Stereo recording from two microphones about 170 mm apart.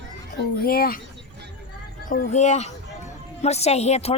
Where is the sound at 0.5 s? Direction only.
60° left (ahead or behind).